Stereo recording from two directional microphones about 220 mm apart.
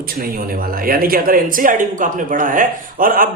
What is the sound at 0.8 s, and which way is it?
Speech, 40° right (ahead or behind).